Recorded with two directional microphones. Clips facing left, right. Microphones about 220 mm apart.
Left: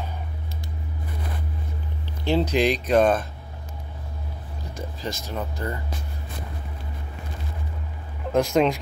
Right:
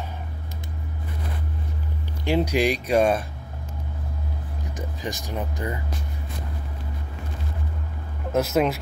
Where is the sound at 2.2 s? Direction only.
10° right (ahead or behind).